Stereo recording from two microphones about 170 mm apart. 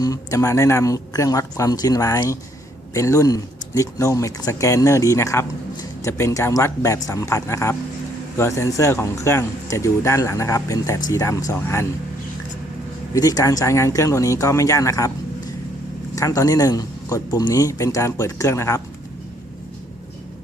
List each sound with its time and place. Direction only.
0.0 s speech: 20° left (ahead or behind)
13.1 s speech: 20° left (ahead or behind)
16.1 s speech: 20° left (ahead or behind)